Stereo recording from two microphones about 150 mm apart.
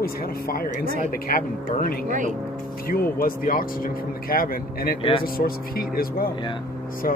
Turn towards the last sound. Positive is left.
turn(degrees=75)  # may be behind; listen again after turning